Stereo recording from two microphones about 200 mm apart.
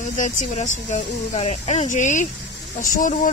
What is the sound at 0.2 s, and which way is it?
Speech, 40° left (ahead or behind).